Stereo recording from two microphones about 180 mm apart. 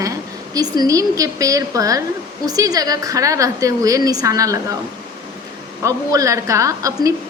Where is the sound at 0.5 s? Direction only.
20° right (ahead or behind).